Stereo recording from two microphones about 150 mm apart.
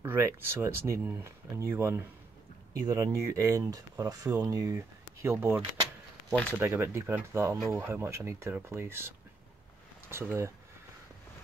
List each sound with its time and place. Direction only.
0.0 s speech: 15° right (ahead or behind)
6.6 s speech: 15° right (ahead or behind)